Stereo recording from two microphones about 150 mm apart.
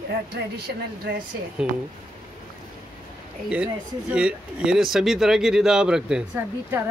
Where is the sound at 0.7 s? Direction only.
90° right.